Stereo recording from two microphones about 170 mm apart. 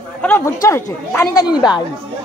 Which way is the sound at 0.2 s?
15° left (ahead or behind).